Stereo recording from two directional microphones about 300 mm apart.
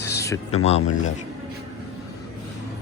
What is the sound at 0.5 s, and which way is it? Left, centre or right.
Speech, left.